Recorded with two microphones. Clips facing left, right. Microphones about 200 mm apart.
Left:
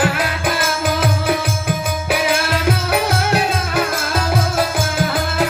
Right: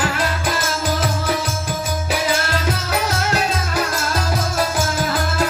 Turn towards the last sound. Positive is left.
turn(degrees=55)  # may be behind; listen again after turning